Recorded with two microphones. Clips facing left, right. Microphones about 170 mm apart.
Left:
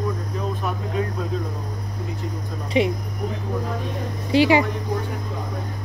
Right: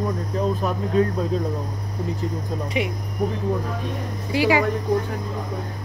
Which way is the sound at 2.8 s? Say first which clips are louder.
Left 6 dB; 25° left (ahead or behind).